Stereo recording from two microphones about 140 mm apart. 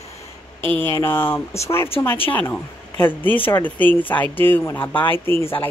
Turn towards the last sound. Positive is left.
turn(degrees=15)  # may be behind; listen again after turning